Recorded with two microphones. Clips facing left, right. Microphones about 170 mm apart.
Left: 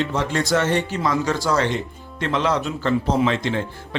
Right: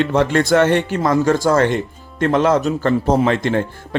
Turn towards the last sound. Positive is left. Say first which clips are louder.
# right 5 dB
turn(degrees=-50)  # may be behind; listen again after turning